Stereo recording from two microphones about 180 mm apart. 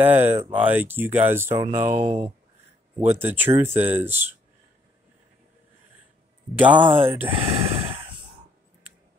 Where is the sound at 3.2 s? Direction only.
10° right (ahead or behind).